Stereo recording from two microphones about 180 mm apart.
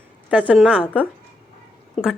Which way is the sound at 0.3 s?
10° right (ahead or behind).